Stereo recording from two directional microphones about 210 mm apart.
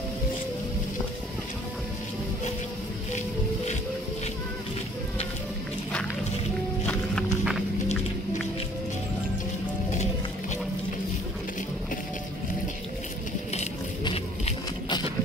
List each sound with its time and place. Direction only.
6.9 s music: 5° left (ahead or behind)
13.5 s music: 30° left (ahead or behind)